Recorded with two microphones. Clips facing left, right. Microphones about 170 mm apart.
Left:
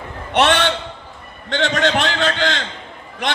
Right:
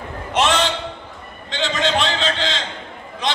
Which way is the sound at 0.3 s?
65° left (ahead or behind).